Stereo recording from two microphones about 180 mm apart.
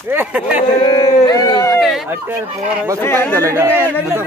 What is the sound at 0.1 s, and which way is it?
Speech, 10° right (ahead or behind).